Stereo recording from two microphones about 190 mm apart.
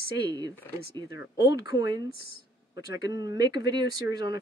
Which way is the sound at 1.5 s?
20° right (ahead or behind).